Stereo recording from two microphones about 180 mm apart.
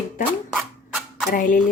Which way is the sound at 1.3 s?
50° left (ahead or behind).